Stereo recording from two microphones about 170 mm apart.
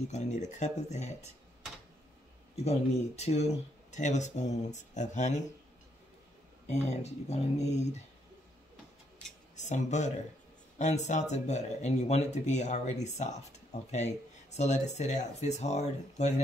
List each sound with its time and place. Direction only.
0.1 s speech: 45° left (ahead or behind)
2.5 s speech: 40° left (ahead or behind)
6.7 s speech: 40° left (ahead or behind)
9.6 s speech: 45° left (ahead or behind)